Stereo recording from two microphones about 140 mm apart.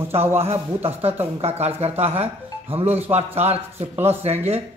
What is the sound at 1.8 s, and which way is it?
Speech, 45° right (ahead or behind).